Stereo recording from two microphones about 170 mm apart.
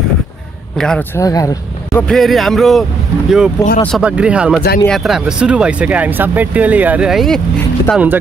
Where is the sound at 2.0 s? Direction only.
Centre (ahead or behind).